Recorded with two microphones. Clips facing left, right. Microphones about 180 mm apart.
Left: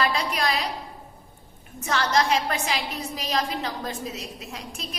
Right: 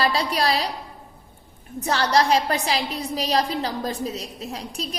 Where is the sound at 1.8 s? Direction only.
35° right (ahead or behind).